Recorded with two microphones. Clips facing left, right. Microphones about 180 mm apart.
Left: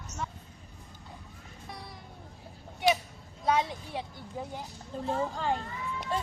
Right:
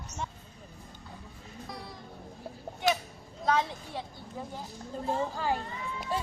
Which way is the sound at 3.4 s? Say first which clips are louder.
Even; 15° left (ahead or behind).